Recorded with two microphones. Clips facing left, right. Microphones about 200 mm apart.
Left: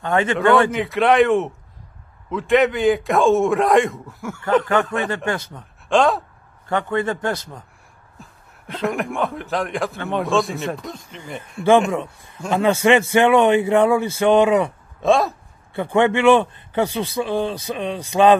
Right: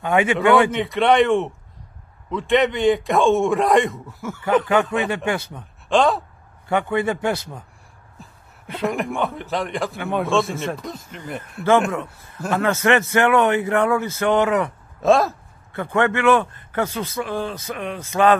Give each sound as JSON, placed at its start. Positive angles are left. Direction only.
{"t": 0.0, "sound": "a man's voice", "side_deg": -10}
{"t": 6.7, "sound": "a man's voice", "side_deg": -10}
{"t": 12.4, "sound": "speech", "side_deg": 15}
{"t": 15.0, "sound": "a man's voice", "side_deg": 0}
{"t": 15.7, "sound": "speech", "side_deg": 15}
{"t": 17.2, "sound": "speech", "side_deg": 25}
{"t": 17.6, "sound": "speech", "side_deg": 15}